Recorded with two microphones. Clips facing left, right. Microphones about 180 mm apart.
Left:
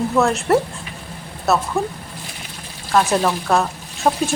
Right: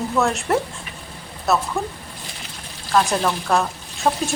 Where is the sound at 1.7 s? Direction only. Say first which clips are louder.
Left 4 dB; 15° left (ahead or behind).